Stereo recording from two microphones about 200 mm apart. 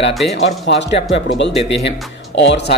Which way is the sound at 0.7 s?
60° left (ahead or behind).